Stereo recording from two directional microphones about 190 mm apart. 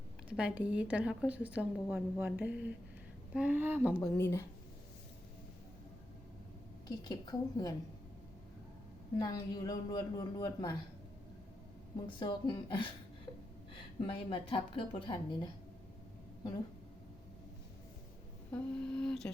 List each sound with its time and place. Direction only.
0.3 s a woman's voice: 5° right (ahead or behind)
4.0 s speech: 15° left (ahead or behind)
6.8 s a man's voice: 20° left (ahead or behind)
9.1 s a man's voice: 20° left (ahead or behind)
11.9 s a man's voice: 25° left (ahead or behind)
14.0 s a man's voice: 25° left (ahead or behind)
18.5 s speech: 5° left (ahead or behind)